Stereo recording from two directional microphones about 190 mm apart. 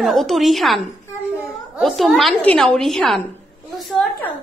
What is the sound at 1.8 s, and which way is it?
A woman's voice, centre (ahead or behind).